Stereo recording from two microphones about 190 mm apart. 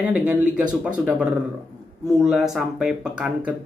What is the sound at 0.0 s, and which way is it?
Speech, 5° right (ahead or behind).